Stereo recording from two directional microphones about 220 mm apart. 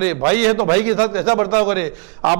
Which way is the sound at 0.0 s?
10° right (ahead or behind).